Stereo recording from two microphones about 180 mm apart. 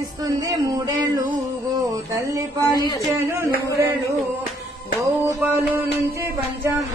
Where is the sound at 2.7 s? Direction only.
20° left (ahead or behind).